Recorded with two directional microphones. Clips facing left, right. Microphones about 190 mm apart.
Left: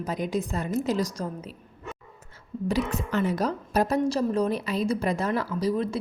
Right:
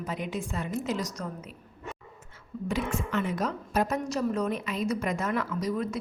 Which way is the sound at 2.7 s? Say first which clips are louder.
Left 3 dB; 40° left (ahead or behind).